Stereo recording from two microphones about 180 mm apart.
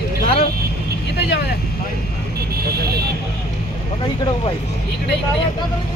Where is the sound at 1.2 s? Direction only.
65° left (ahead or behind).